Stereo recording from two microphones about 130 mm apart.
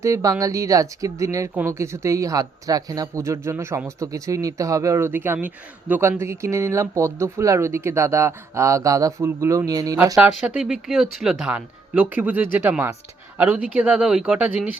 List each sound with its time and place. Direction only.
0.0 s speech: 25° right (ahead or behind)
10.2 s speech: 10° right (ahead or behind)